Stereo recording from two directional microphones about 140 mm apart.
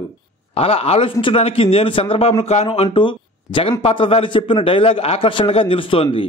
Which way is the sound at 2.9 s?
35° left (ahead or behind).